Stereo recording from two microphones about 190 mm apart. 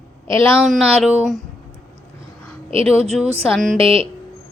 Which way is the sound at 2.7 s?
30° right (ahead or behind).